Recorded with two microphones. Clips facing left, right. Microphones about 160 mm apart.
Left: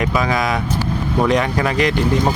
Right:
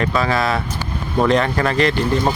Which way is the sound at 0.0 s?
15° left (ahead or behind).